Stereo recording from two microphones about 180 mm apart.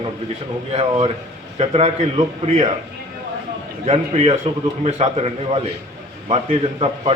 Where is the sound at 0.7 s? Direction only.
35° right (ahead or behind).